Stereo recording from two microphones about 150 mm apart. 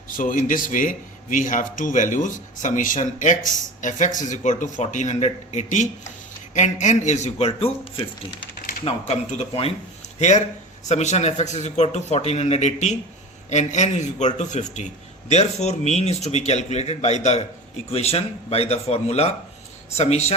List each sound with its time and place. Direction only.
0.1 s a man's voice: 65° left (ahead or behind); by 9.0 s 45° left (ahead or behind)
10.2 s a man's voice: 50° left (ahead or behind)